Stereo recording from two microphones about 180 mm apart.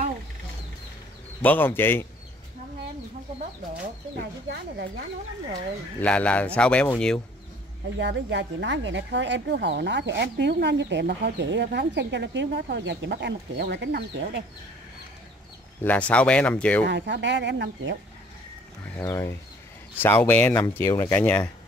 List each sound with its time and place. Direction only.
1.4 s speech: 10° left (ahead or behind)
4.5 s speech: 70° right (ahead or behind)
5.9 s speech: 5° left (ahead or behind)
8.0 s speech: 75° right (ahead or behind)
15.8 s speech: 10° left (ahead or behind)
16.8 s speech: 70° right (ahead or behind)
18.9 s speech: 15° left (ahead or behind)